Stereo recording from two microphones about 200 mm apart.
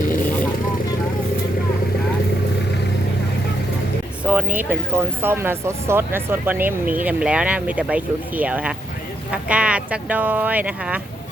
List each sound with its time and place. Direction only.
4.2 s speech: 5° right (ahead or behind)